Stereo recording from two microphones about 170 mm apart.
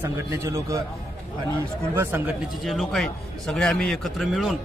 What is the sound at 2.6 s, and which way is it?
A man's voice, centre (ahead or behind).